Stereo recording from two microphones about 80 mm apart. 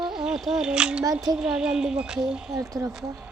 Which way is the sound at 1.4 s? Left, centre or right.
Centre.